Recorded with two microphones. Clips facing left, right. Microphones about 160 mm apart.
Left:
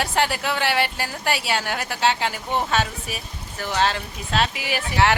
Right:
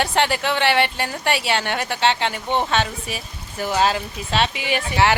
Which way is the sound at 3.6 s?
10° right (ahead or behind).